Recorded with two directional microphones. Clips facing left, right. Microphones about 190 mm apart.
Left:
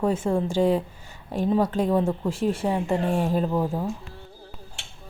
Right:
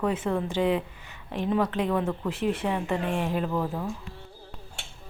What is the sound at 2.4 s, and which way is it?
Speech, 45° left (ahead or behind).